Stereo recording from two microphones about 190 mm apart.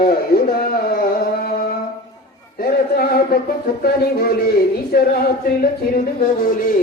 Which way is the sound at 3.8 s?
55° left (ahead or behind).